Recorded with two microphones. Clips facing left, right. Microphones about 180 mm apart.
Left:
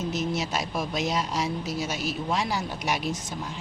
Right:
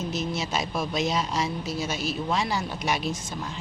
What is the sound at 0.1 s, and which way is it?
Speech, 15° left (ahead or behind).